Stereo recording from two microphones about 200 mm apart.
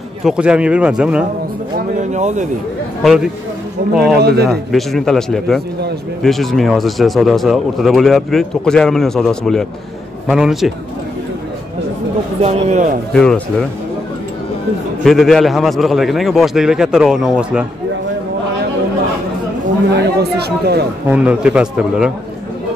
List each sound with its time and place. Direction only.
0.2 s speech: 5° right (ahead or behind)
2.0 s speech: 35° right (ahead or behind)
3.0 s speech: centre (ahead or behind)
4.2 s speech: 50° right (ahead or behind)
4.5 s speech: centre (ahead or behind)
12.4 s speech: 35° right (ahead or behind)
13.1 s speech: 5° left (ahead or behind)
15.0 s speech: centre (ahead or behind)
19.9 s speech: 55° right (ahead or behind)
21.1 s speech: 5° right (ahead or behind)